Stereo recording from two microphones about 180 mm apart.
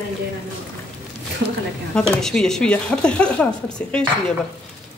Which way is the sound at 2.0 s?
5° left (ahead or behind).